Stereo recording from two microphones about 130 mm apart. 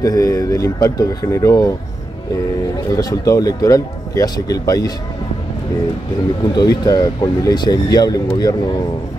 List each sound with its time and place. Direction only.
0.0 s speech: 25° left (ahead or behind)
2.9 s speech: 30° left (ahead or behind)
6.4 s speech: 30° left (ahead or behind)